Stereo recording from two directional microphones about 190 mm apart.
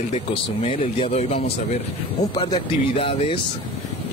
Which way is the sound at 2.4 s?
25° left (ahead or behind).